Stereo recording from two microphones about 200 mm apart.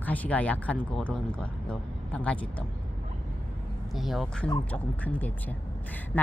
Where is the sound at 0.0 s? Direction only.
10° left (ahead or behind).